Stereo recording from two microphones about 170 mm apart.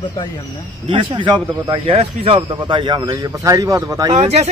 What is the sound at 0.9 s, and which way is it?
Speech, 30° right (ahead or behind).